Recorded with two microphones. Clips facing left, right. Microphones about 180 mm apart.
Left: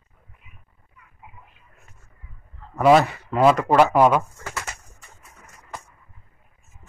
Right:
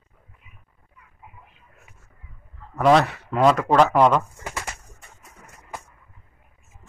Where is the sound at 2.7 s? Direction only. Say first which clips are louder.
Left 2 dB; 5° left (ahead or behind).